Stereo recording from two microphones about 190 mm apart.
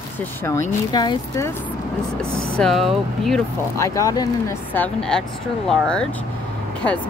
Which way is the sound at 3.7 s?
15° left (ahead or behind).